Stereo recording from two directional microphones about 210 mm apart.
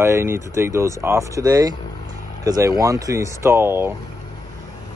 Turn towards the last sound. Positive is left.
turn(degrees=-10)  # may be behind; listen again after turning